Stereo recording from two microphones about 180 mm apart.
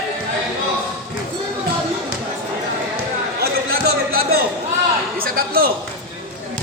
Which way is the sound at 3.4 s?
60° right (ahead or behind).